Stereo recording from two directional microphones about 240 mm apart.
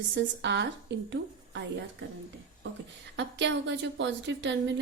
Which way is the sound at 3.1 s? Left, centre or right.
Right.